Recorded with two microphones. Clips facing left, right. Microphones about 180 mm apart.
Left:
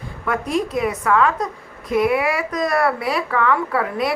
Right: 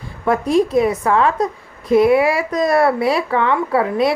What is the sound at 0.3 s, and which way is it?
A woman's voice, 30° right (ahead or behind).